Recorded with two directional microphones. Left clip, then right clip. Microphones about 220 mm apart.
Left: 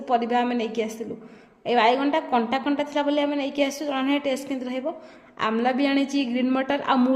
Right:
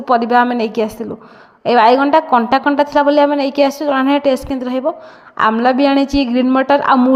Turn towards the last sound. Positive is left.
turn(degrees=-20)  # may be behind; listen again after turning